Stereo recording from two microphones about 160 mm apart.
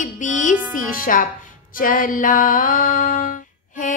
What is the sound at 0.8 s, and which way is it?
Female singing, 60° left (ahead or behind).